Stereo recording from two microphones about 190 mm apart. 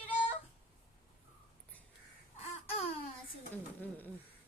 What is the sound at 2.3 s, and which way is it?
Babbling, 30° left (ahead or behind).